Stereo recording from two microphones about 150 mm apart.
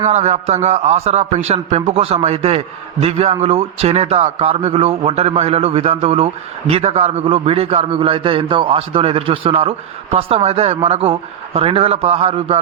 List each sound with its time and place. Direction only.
0.0 s a man's voice: 50° right (ahead or behind)